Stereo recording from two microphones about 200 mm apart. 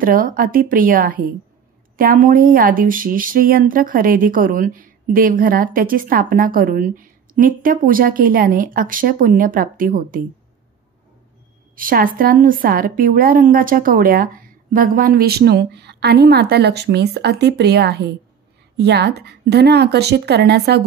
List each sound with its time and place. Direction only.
0.0 s speech: 45° right (ahead or behind)
11.7 s a woman's voice: 45° right (ahead or behind)